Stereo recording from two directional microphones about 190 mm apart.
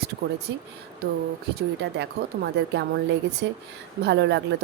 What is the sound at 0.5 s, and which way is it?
Speech, 65° right (ahead or behind).